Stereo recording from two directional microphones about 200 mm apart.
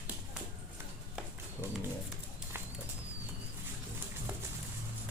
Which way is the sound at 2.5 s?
10° right (ahead or behind).